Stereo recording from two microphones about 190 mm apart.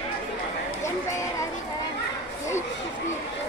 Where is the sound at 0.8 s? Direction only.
15° left (ahead or behind).